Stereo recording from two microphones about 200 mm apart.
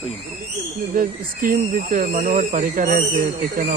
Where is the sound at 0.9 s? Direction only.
45° right (ahead or behind).